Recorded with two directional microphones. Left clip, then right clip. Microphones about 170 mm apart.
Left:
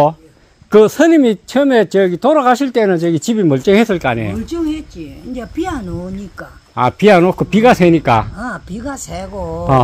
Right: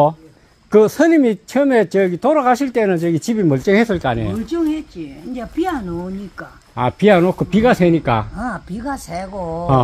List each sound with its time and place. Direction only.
0.7 s speech: 25° left (ahead or behind)
6.7 s speech: 20° left (ahead or behind)
8.4 s speech: 15° left (ahead or behind)